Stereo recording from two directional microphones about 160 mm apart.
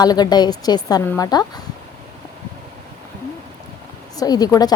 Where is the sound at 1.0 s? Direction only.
15° left (ahead or behind).